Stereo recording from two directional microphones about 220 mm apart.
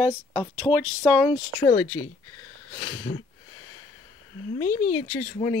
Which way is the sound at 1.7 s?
65° left (ahead or behind).